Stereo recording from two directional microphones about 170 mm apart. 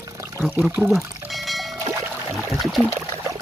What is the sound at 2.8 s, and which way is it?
Trickle, 15° right (ahead or behind).